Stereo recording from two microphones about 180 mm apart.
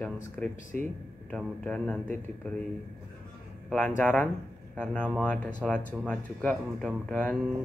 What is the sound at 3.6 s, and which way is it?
Speech, 5° left (ahead or behind).